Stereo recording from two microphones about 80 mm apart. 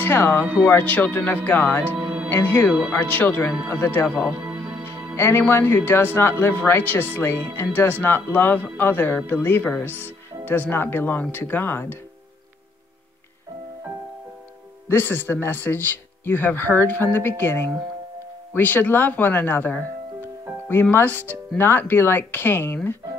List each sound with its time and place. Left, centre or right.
0.0 s speech: left
1.9 s music: centre
2.2 s speech: left
5.1 s speech: left
14.9 s speech: left
20.9 s speech: left